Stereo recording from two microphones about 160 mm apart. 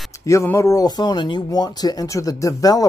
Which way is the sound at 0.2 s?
20° left (ahead or behind).